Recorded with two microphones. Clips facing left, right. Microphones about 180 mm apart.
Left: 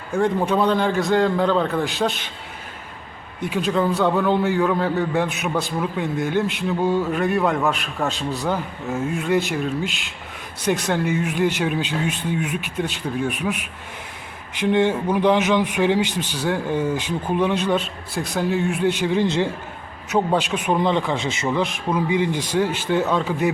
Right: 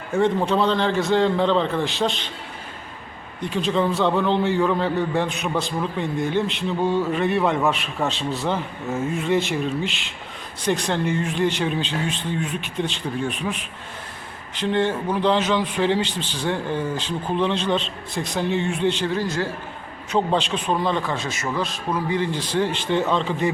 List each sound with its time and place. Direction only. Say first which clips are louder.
0.1 s a man's voice: even; centre (ahead or behind)
0.4 s a man's voice: left 1 dB; 15° left (ahead or behind)
3.4 s a man's voice: left 1 dB; 5° left (ahead or behind); by 19.5 s 20° left (ahead or behind)
20.1 s a man's voice: left 1 dB; 10° left (ahead or behind)